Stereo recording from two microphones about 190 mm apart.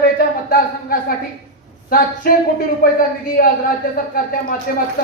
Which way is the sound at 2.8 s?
50° left (ahead or behind).